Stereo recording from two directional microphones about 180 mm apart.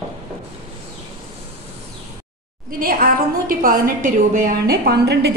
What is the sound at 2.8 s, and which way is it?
A woman's voice, 50° right (ahead or behind).